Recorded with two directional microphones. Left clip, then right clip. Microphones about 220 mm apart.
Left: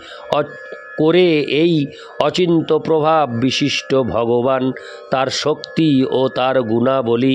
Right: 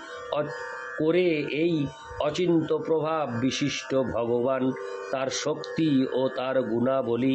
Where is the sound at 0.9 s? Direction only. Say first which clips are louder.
Left 11 dB; 45° left (ahead or behind).